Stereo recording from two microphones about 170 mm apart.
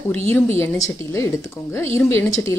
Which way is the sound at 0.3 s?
15° left (ahead or behind).